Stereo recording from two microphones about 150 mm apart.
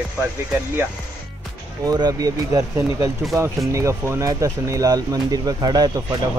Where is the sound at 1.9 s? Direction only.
25° right (ahead or behind).